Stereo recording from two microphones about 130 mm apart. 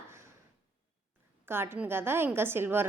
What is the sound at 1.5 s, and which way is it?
A woman's voice, 20° right (ahead or behind).